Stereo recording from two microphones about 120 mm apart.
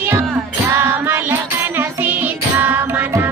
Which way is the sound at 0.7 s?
20° right (ahead or behind).